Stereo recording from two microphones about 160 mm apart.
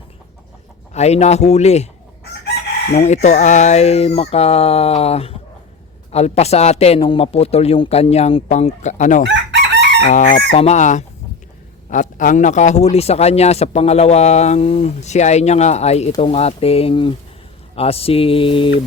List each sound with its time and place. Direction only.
0.9 s a man's voice: 45° left (ahead or behind)
2.9 s a man's voice: 45° left (ahead or behind)
9.3 s chicken: 90° right
10.1 s chicken: 55° left (ahead or behind)
10.5 s a man's voice: 45° left (ahead or behind)